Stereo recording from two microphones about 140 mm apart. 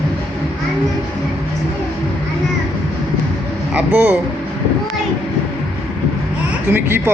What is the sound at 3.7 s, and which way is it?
Speech, 10° right (ahead or behind).